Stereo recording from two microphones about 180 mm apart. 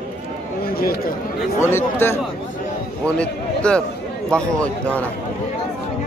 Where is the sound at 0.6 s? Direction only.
55° left (ahead or behind).